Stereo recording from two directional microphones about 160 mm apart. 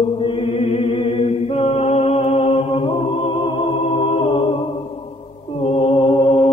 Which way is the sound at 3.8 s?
45° left (ahead or behind).